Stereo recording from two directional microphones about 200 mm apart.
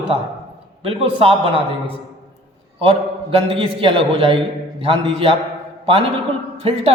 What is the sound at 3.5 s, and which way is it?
A man's voice, 30° right (ahead or behind).